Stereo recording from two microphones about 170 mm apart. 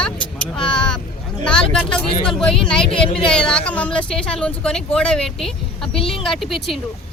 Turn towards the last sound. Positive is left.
turn(degrees=0)  # may be behind; listen again after turning